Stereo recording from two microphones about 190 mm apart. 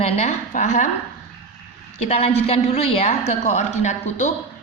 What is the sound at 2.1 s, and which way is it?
A woman's voice, 35° left (ahead or behind).